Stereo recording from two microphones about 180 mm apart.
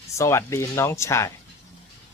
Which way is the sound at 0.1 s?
15° left (ahead or behind).